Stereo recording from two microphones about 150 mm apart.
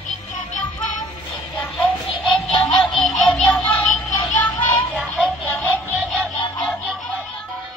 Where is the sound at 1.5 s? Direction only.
5° left (ahead or behind).